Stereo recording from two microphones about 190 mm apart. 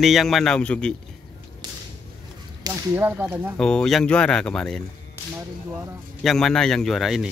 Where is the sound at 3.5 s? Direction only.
5° left (ahead or behind).